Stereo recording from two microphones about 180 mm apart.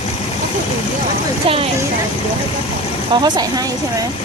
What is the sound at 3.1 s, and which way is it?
Speech, 25° right (ahead or behind).